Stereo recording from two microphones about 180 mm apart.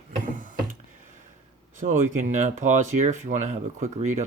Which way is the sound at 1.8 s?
45° right (ahead or behind).